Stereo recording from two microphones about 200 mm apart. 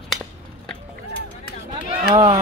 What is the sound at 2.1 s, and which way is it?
Run, 20° right (ahead or behind).